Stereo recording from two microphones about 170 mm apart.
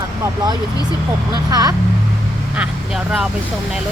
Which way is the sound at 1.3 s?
20° right (ahead or behind).